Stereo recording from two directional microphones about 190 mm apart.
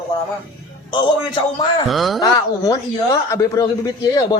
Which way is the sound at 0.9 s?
25° left (ahead or behind).